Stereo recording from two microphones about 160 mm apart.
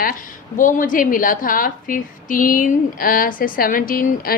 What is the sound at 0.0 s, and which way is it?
A woman's voice, 60° left (ahead or behind).